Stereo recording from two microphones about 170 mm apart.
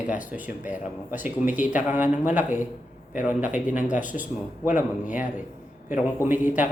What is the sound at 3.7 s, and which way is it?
Speech, 50° left (ahead or behind).